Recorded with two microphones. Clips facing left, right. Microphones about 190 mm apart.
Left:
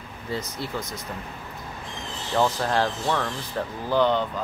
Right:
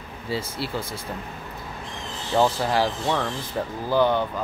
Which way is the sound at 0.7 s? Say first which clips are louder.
Right 1 dB; 30° right (ahead or behind).